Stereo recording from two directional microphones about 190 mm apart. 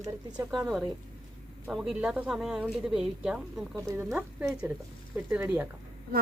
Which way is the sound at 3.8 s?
15° right (ahead or behind).